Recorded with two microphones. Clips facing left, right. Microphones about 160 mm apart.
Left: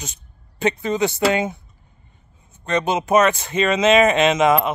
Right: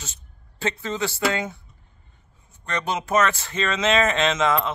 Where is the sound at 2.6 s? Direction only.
20° left (ahead or behind).